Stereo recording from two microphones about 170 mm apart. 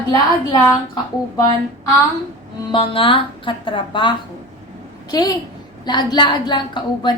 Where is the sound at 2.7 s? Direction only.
30° left (ahead or behind).